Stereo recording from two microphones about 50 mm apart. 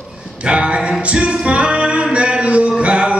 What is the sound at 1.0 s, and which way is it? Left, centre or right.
Music, right.